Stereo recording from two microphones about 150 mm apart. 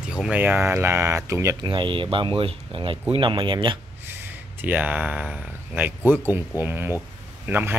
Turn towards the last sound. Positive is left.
turn(degrees=-15)  # may be behind; listen again after turning